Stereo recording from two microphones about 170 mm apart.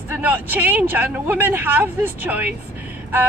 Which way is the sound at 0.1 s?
10° right (ahead or behind).